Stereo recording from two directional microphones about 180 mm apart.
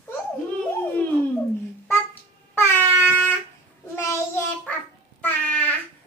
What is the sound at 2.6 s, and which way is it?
Air horn, 10° left (ahead or behind).